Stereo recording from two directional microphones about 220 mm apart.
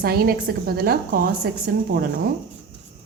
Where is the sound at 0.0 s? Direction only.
45° right (ahead or behind).